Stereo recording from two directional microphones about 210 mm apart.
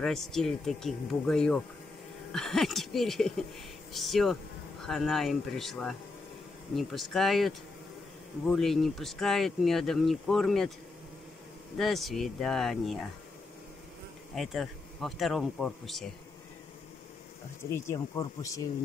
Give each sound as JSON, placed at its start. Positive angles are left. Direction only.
{"t": 0.0, "sound": "speech", "side_deg": 0}
{"t": 11.8, "sound": "speech", "side_deg": 0}
{"t": 14.3, "sound": "speech", "side_deg": 0}
{"t": 17.6, "sound": "speech", "side_deg": 15}